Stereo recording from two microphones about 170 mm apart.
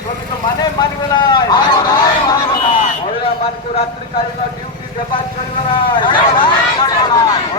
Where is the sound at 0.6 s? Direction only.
25° left (ahead or behind).